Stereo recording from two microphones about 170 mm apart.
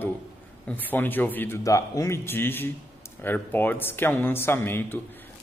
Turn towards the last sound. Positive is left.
turn(degrees=15)  # may be behind; listen again after turning